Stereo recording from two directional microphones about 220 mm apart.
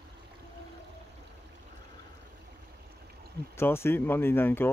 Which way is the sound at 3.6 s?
10° left (ahead or behind).